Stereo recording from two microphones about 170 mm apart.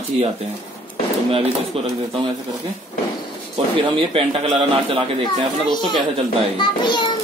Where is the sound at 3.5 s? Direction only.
30° right (ahead or behind).